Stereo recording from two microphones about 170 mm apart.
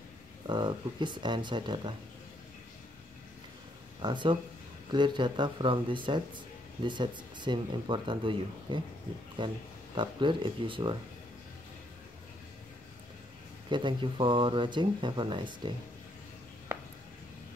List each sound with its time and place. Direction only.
0.5 s speech: 25° right (ahead or behind)
4.0 s speech: 25° right (ahead or behind)
13.7 s speech: 30° right (ahead or behind)